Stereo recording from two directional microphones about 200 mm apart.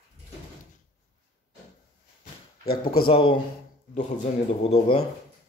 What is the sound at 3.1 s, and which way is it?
A man's voice, 25° left (ahead or behind).